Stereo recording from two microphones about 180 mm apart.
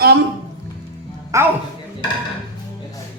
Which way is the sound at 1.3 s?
15° right (ahead or behind).